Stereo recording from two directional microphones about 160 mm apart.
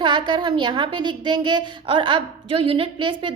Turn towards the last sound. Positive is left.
turn(degrees=-30)  # may be behind; listen again after turning